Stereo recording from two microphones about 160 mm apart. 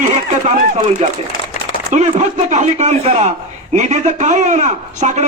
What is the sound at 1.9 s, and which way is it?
A man's voice, 45° right (ahead or behind).